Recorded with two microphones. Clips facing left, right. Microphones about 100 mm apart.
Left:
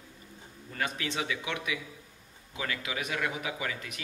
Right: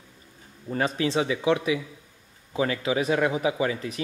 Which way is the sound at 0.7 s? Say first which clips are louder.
Right 9 dB; 30° right (ahead or behind).